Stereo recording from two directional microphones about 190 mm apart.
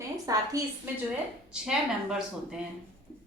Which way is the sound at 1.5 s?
5° right (ahead or behind).